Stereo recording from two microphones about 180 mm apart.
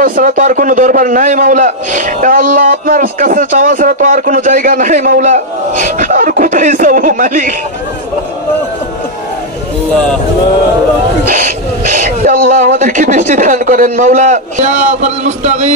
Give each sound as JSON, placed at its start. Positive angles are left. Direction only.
{"t": 0.0, "sound": "a man's voice", "side_deg": -50}
{"t": 11.2, "sound": "a man's voice", "side_deg": -50}